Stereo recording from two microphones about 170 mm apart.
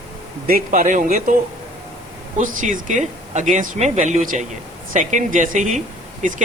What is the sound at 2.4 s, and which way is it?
Speech, 50° right (ahead or behind).